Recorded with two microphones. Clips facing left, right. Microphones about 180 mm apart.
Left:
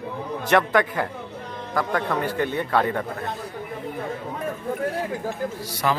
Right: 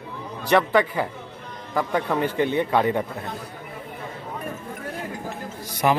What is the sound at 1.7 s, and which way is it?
A man's voice, 15° right (ahead or behind).